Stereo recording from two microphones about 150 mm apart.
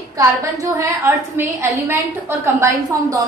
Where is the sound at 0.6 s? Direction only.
20° right (ahead or behind).